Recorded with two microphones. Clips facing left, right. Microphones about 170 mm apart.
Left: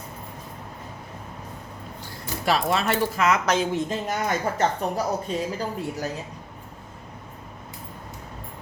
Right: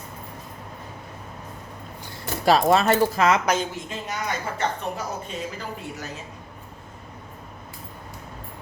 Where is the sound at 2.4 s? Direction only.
40° right (ahead or behind).